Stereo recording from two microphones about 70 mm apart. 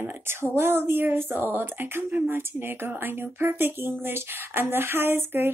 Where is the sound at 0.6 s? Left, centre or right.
Right.